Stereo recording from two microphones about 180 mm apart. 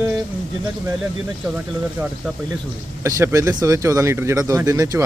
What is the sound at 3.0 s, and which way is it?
Speech, 20° right (ahead or behind).